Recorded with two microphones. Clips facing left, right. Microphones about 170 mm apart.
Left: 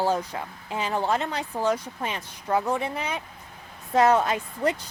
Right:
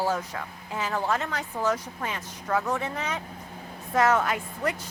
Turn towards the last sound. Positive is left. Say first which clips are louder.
# left 3 dB
turn(degrees=25)  # may be behind; listen again after turning